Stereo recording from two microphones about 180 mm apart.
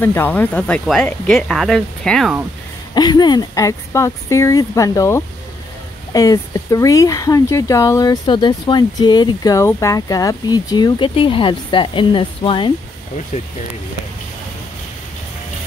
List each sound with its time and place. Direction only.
0.0 s speech: 10° left (ahead or behind)
2.9 s speech: 25° left (ahead or behind)